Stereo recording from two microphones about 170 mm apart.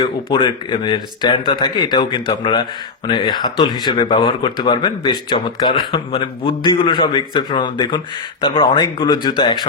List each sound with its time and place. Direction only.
0.0 s speech: 30° left (ahead or behind)